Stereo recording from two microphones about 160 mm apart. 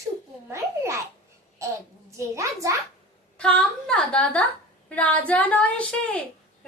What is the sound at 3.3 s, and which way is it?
A woman's voice, 5° left (ahead or behind).